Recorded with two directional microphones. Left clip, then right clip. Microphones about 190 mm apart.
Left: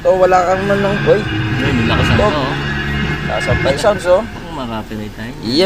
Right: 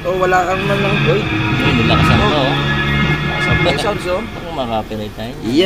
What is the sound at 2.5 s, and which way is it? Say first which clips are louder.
Horse: right 3 dB; 40° right (ahead or behind).